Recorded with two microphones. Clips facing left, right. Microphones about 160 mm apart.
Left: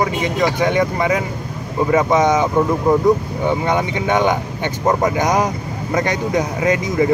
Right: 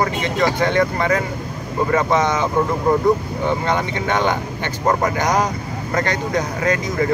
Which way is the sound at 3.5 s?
15° left (ahead or behind).